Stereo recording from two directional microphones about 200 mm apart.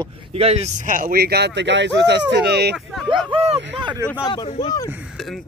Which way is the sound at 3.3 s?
30° right (ahead or behind).